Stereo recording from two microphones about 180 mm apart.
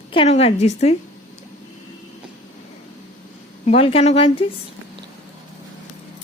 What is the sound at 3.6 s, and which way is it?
Speech, 35° left (ahead or behind).